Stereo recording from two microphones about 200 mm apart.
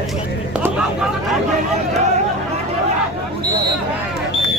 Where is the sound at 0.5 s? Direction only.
5° right (ahead or behind).